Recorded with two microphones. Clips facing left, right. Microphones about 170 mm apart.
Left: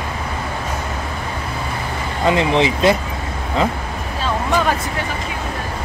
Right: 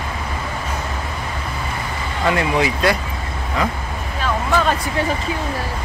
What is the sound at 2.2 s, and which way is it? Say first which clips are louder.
Speech: left 3 dB; 20° left (ahead or behind).